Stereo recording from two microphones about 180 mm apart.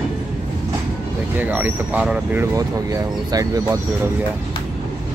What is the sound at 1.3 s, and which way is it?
Speech, 10° right (ahead or behind).